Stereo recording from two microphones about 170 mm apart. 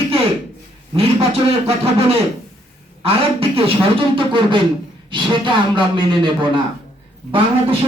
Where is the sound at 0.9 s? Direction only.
35° right (ahead or behind).